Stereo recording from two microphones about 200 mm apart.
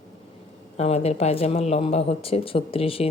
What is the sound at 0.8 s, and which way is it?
A woman's voice, 30° left (ahead or behind).